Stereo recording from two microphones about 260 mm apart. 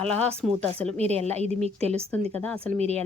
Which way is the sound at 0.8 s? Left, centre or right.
Right.